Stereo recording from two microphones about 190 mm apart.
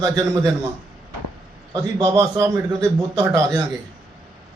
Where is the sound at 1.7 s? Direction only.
15° right (ahead or behind).